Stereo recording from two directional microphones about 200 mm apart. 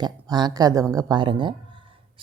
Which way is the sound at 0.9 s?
20° right (ahead or behind).